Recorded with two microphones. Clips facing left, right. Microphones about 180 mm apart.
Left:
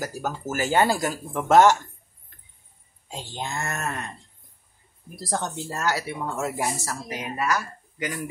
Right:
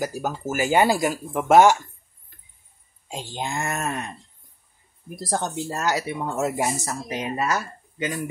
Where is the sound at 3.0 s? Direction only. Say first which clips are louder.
Right 3 dB; 15° right (ahead or behind).